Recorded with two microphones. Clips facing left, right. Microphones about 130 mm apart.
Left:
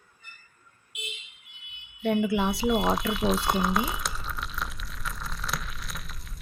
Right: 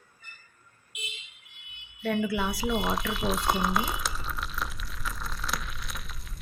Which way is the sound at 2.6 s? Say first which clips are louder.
Left 4 dB; centre (ahead or behind).